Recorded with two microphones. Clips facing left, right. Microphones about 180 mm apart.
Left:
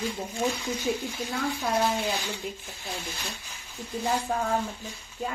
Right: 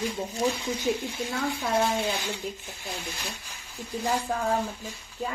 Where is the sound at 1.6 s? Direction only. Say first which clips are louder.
Right 1 dB; 25° right (ahead or behind).